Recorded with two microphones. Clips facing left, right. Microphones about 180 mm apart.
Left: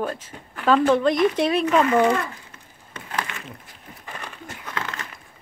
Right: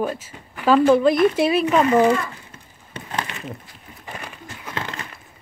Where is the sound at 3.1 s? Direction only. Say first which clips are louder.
Right 1 dB; 25° right (ahead or behind).